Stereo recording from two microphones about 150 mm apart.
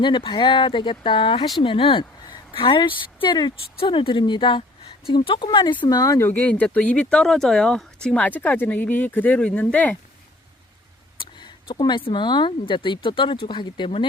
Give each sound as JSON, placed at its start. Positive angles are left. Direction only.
{"t": 0.0, "sound": "speech", "side_deg": 30}
{"t": 11.2, "sound": "speech", "side_deg": 30}